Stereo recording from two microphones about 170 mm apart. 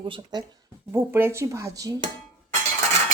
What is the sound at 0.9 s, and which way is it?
Speech, 15° right (ahead or behind).